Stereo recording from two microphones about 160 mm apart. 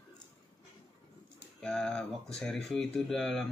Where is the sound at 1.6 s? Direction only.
5° left (ahead or behind).